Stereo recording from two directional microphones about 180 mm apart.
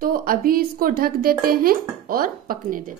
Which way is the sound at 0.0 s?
55° right (ahead or behind).